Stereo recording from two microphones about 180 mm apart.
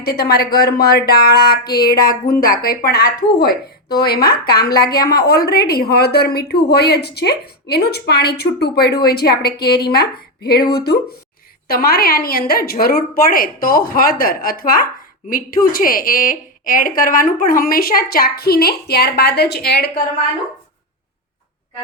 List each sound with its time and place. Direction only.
0.0 s a woman's voice: 60° left (ahead or behind)